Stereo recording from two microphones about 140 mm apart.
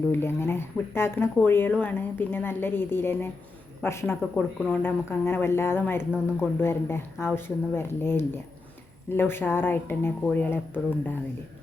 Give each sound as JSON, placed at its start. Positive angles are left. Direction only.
{"t": 0.1, "sound": "speech", "side_deg": 15}
{"t": 6.0, "sound": "speech", "side_deg": -5}
{"t": 6.6, "sound": "speech", "side_deg": 15}